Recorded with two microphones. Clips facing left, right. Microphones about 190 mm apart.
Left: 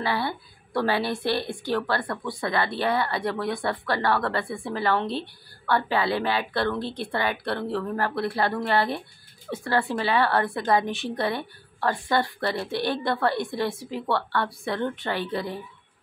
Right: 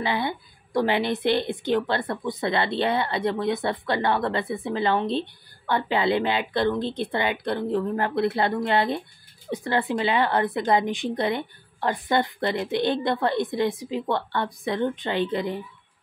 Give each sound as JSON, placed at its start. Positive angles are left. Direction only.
{"t": 0.0, "sound": "a woman's voice", "side_deg": -20}